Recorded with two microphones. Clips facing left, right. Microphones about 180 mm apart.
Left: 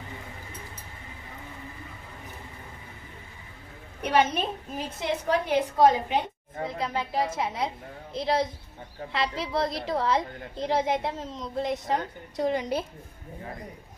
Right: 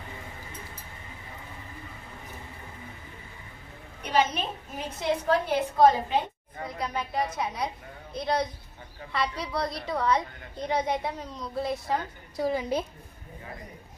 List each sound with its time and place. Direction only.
4.0 s a woman's voice: 60° left (ahead or behind)
5.0 s a woman's voice: 15° left (ahead or behind)
12.4 s a woman's voice: 5° right (ahead or behind)